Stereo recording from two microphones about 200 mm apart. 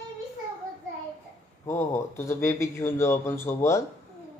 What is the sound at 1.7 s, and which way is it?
A man's voice, 15° left (ahead or behind).